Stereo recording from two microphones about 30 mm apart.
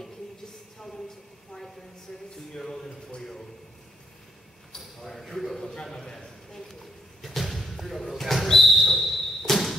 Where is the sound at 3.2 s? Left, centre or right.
Centre.